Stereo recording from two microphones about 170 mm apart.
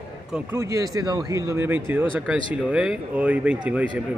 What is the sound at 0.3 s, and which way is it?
A man's voice, 15° right (ahead or behind).